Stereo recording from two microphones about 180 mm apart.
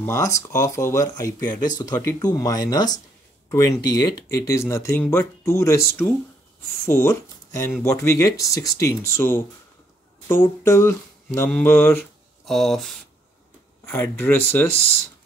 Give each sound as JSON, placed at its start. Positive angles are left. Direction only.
{"t": 0.0, "sound": "speech", "side_deg": 15}
{"t": 12.0, "sound": "a sound", "side_deg": 0}
{"t": 13.8, "sound": "speech", "side_deg": 10}